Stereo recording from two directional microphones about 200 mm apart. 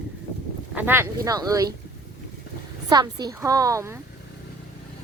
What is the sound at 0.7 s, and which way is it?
Speech, 10° right (ahead or behind).